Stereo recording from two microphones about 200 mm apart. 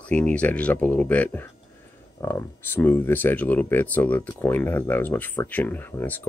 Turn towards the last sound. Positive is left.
turn(degrees=10)  # may be behind; listen again after turning